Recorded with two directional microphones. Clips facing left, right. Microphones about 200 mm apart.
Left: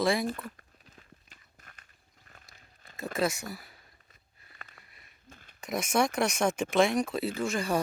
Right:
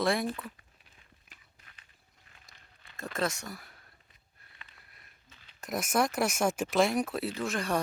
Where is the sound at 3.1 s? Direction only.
10° left (ahead or behind).